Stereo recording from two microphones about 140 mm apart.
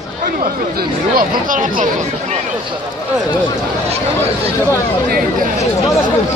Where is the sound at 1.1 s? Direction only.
80° right.